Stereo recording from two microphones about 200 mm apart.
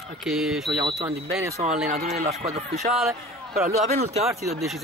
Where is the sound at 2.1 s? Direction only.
35° right (ahead or behind).